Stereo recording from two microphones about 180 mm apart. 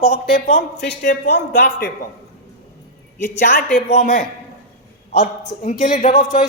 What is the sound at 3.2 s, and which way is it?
Speech, 45° left (ahead or behind).